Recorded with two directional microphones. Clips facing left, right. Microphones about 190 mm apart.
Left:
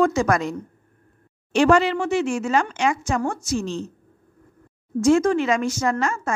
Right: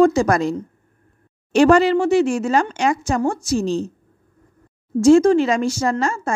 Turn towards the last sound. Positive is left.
turn(degrees=-30)  # may be behind; listen again after turning